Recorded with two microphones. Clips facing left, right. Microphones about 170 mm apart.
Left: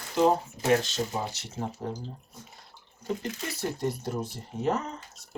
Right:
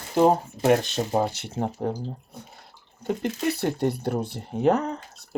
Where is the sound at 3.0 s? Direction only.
65° right (ahead or behind).